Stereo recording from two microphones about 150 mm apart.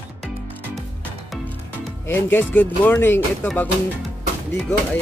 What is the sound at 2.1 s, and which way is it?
Speech, 15° left (ahead or behind).